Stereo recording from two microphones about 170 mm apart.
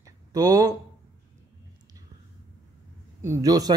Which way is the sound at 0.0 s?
20° right (ahead or behind).